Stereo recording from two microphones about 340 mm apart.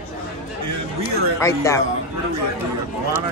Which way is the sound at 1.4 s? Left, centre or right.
Centre.